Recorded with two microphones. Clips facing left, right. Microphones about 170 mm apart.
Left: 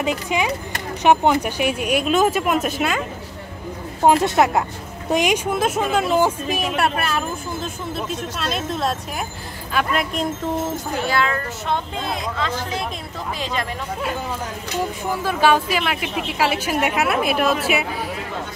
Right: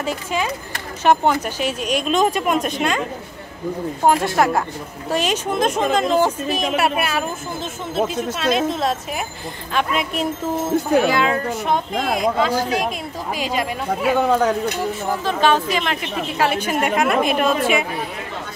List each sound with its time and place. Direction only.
0.0 s speech: 15° left (ahead or behind)
4.0 s speech: 20° left (ahead or behind)
6.8 s a woman's voice: 10° right (ahead or behind)
11.1 s speech: 15° right (ahead or behind)
11.9 s speech: 90° right
12.4 s speech: 10° right (ahead or behind)
14.0 s speech: 70° right (ahead or behind)
15.2 s a woman's voice: 10° left (ahead or behind)